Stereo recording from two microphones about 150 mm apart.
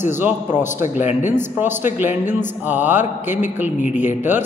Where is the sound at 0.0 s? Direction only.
15° right (ahead or behind).